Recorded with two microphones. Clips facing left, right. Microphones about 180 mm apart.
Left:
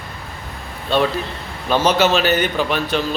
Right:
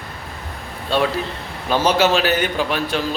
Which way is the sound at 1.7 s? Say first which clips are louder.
Left 1 dB; 10° right (ahead or behind).